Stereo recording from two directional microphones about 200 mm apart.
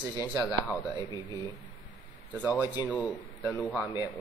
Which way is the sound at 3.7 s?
10° right (ahead or behind).